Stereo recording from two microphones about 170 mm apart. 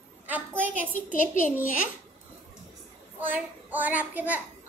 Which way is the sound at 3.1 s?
10° right (ahead or behind).